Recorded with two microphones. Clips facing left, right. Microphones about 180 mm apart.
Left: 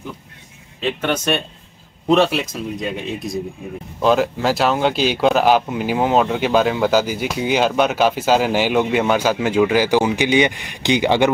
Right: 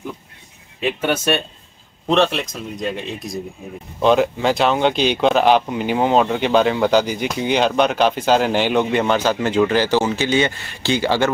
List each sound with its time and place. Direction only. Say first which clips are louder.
0.7 s speech: right 1 dB; 10° right (ahead or behind)
2.0 s speech: left 2 dB; 5° left (ahead or behind)